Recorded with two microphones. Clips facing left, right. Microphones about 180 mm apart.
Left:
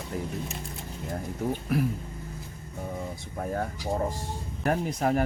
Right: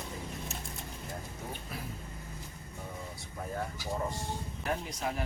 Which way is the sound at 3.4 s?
50° left (ahead or behind).